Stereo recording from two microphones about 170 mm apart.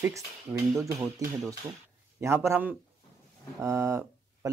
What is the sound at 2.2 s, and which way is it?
Speech, 15° right (ahead or behind).